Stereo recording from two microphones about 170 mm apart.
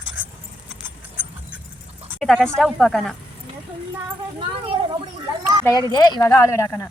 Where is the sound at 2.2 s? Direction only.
5° left (ahead or behind).